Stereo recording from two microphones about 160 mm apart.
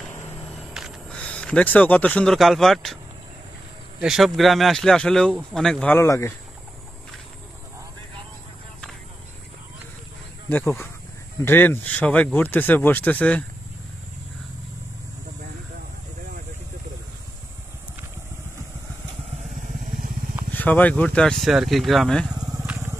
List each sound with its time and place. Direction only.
0.7 s speech: centre (ahead or behind)
4.0 s speech: centre (ahead or behind); by 6.3 s 15° left (ahead or behind)
10.5 s speech: 15° left (ahead or behind)
19.5 s vehicle: 55° right (ahead or behind)
20.5 s speech: 10° left (ahead or behind)
22.3 s vehicle: 25° right (ahead or behind)